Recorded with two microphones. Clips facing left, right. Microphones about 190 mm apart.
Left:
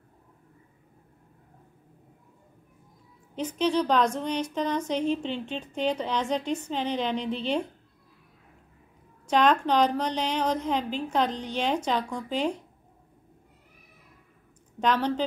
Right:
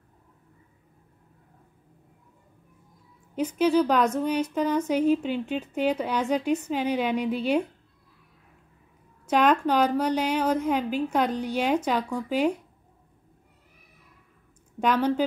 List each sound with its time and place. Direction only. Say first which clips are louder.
3.3 s a woman's voice: right 4 dB; 10° right (ahead or behind)
9.3 s a woman's voice: right 1 dB; 10° right (ahead or behind)
14.8 s a woman's voice: right 2 dB; 10° right (ahead or behind)